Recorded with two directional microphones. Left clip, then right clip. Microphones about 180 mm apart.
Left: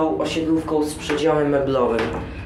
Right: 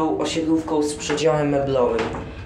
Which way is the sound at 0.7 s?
10° right (ahead or behind).